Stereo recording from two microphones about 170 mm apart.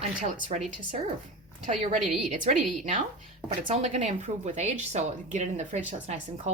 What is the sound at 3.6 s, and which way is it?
Speech, 40° right (ahead or behind).